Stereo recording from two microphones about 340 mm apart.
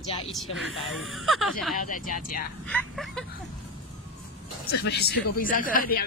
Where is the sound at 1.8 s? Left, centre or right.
Left.